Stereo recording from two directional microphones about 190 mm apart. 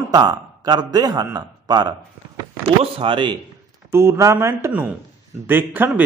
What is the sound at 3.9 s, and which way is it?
A man's voice, 15° right (ahead or behind).